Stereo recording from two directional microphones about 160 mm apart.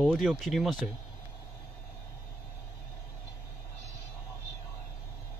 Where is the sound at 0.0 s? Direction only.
Centre (ahead or behind).